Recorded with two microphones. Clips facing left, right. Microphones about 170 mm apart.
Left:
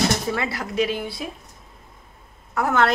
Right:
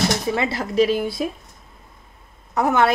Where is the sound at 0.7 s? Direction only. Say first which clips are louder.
Right 6 dB; 40° right (ahead or behind).